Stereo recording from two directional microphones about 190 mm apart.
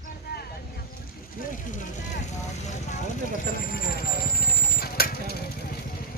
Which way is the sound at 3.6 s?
50° left (ahead or behind).